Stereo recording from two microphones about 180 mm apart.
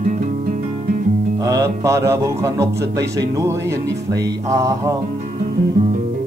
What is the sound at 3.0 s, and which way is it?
Speech, 20° right (ahead or behind).